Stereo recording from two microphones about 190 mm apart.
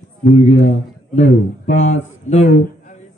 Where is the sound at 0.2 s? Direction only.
35° left (ahead or behind).